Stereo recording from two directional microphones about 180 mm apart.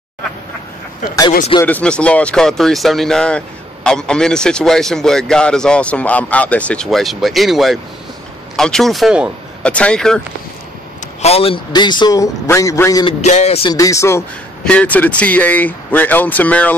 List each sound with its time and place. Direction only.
1.6 s speech: 10° left (ahead or behind)
11.2 s a man's voice: 30° left (ahead or behind); by 13.0 s 15° left (ahead or behind)
13.0 s speech: 40° left (ahead or behind)
13.7 s speech: 20° left (ahead or behind)